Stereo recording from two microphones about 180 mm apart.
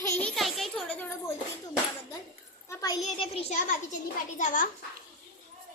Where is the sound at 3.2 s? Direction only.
35° left (ahead or behind).